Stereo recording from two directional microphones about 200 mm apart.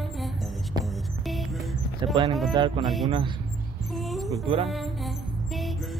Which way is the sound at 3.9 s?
Centre (ahead or behind).